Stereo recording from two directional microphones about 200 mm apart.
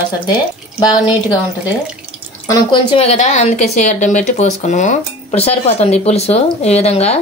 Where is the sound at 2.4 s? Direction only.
30° left (ahead or behind).